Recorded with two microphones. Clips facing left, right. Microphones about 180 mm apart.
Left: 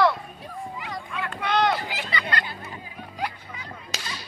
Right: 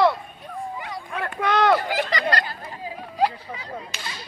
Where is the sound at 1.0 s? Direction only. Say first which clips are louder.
Right 5 dB; 50° right (ahead or behind); by 3.8 s 35° right (ahead or behind).